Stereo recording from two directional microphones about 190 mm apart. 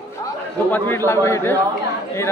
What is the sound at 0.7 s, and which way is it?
Speech, 10° left (ahead or behind).